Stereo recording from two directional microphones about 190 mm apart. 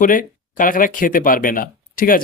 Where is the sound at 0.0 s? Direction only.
45° left (ahead or behind).